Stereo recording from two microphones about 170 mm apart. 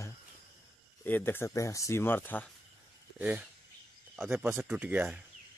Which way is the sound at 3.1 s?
5° right (ahead or behind).